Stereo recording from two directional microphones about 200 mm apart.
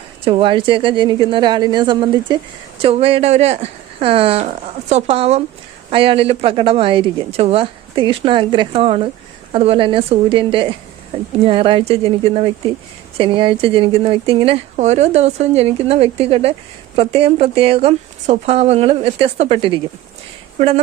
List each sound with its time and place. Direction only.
0.3 s speech: 25° right (ahead or behind)